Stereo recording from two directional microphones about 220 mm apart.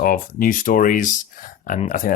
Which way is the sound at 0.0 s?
40° left (ahead or behind).